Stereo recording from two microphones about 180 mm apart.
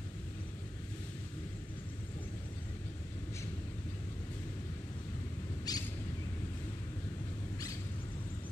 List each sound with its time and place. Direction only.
5.7 s bird: 20° left (ahead or behind)